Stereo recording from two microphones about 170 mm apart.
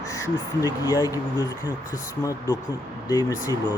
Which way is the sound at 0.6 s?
20° left (ahead or behind).